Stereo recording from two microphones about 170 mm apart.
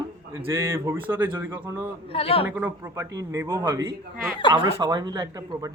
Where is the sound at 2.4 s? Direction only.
10° right (ahead or behind).